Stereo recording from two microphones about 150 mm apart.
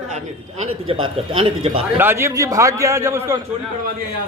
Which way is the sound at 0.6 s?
35° right (ahead or behind).